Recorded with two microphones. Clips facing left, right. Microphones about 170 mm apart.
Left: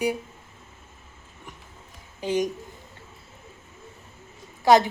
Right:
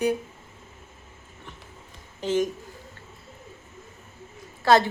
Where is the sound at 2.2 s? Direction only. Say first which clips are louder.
Right 1 dB; 15° left (ahead or behind).